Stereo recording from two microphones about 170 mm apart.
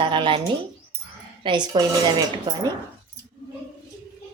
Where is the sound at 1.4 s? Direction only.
25° right (ahead or behind).